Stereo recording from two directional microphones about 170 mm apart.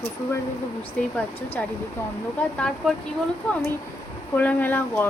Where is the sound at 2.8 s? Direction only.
Centre (ahead or behind).